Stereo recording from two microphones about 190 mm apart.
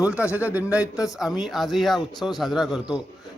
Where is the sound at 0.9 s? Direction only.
20° left (ahead or behind).